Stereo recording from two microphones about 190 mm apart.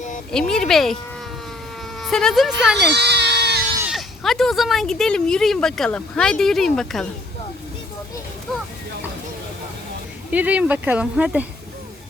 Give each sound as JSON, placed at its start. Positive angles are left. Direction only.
{"t": 0.3, "sound": "speech", "side_deg": 5}
{"t": 2.0, "sound": "a woman's voice", "side_deg": 0}
{"t": 2.7, "sound": "baby cry", "side_deg": -60}
{"t": 3.8, "sound": "speech", "side_deg": -5}
{"t": 10.3, "sound": "speech", "side_deg": -10}